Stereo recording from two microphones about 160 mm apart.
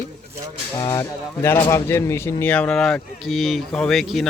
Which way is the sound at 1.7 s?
15° left (ahead or behind).